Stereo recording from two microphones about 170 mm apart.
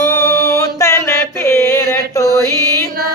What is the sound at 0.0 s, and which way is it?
Music, 15° left (ahead or behind).